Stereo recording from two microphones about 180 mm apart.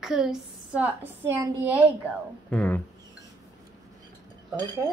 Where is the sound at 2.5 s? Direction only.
10° left (ahead or behind).